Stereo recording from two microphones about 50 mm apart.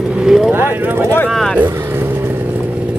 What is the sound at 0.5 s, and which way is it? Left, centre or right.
Speech, right.